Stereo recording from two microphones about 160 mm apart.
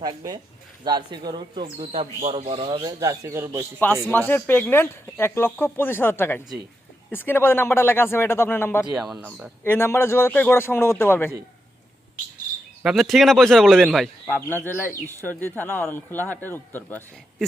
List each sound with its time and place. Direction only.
0.0 s speech: 25° right (ahead or behind)
1.8 s speech: 40° right (ahead or behind); by 3.7 s 15° right (ahead or behind)
4.3 s speech: 15° left (ahead or behind)
12.8 s a man's voice: centre (ahead or behind)
14.4 s speech: 15° left (ahead or behind)